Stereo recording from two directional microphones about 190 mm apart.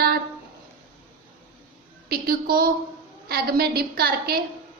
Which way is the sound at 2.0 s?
50° right (ahead or behind).